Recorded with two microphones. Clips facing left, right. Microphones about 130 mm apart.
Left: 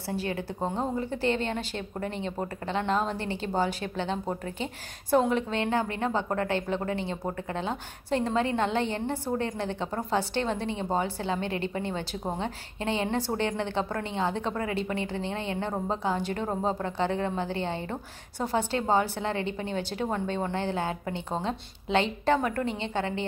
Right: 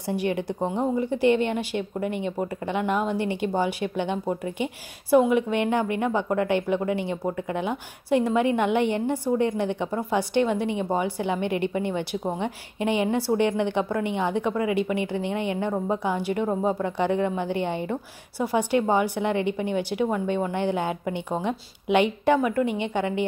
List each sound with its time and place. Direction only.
0.1 s a woman's voice: 15° right (ahead or behind)